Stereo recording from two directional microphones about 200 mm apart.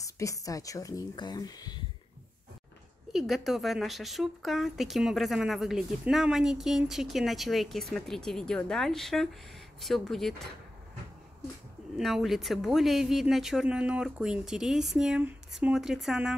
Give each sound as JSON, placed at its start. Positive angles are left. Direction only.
{"t": 0.0, "sound": "speech", "side_deg": 15}
{"t": 3.1, "sound": "speech", "side_deg": 0}
{"t": 12.0, "sound": "speech", "side_deg": 0}